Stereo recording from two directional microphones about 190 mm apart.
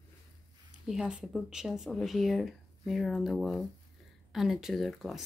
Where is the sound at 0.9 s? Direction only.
5° right (ahead or behind).